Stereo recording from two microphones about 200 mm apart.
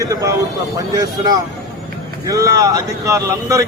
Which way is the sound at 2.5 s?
15° right (ahead or behind).